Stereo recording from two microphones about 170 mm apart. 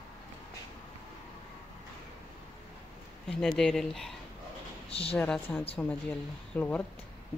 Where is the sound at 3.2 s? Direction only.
5° left (ahead or behind).